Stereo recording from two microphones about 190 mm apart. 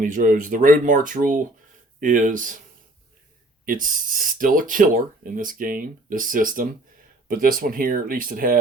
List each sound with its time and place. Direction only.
0.0 s speech: 45° right (ahead or behind)
3.7 s speech: 45° right (ahead or behind)